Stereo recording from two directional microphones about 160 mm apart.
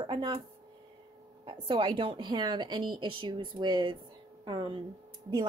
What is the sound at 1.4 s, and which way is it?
A woman's voice, 30° right (ahead or behind).